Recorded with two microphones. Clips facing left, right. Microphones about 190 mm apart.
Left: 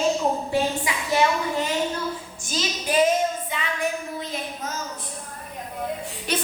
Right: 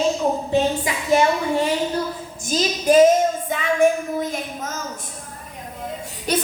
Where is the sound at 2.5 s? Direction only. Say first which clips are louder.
Right 9 dB; 40° right (ahead or behind).